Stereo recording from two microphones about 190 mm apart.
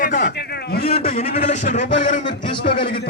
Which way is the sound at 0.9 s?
35° left (ahead or behind).